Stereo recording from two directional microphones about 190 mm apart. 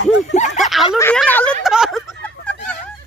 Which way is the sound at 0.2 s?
40° left (ahead or behind).